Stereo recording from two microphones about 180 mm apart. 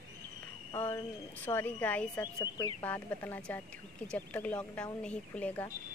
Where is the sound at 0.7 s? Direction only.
15° left (ahead or behind).